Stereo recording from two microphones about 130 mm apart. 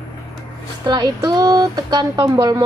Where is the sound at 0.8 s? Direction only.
30° right (ahead or behind).